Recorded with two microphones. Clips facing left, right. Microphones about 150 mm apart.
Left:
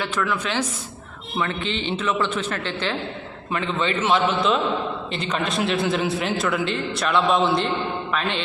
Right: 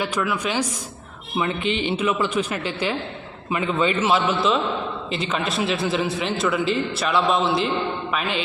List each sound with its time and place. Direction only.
0.0 s a man's voice: 15° right (ahead or behind)